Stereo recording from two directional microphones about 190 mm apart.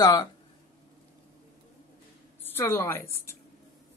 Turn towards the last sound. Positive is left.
turn(degrees=15)  # may be behind; listen again after turning